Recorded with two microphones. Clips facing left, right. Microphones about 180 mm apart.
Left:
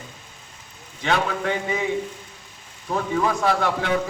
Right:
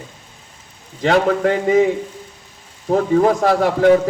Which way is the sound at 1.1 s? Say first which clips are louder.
Right 8 dB; 50° right (ahead or behind).